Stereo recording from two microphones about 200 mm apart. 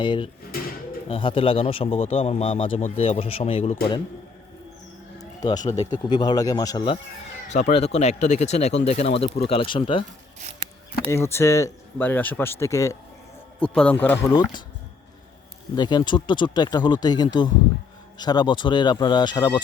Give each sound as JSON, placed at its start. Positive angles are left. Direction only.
{"t": 0.0, "sound": "speech", "side_deg": 25}
{"t": 5.4, "sound": "speech", "side_deg": 20}
{"t": 7.4, "sound": "speech", "side_deg": 35}
{"t": 11.1, "sound": "speech", "side_deg": 15}
{"t": 15.7, "sound": "speech", "side_deg": 20}